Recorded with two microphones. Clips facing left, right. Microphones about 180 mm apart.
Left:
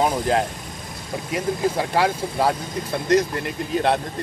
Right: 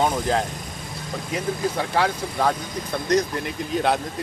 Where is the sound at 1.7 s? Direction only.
10° left (ahead or behind).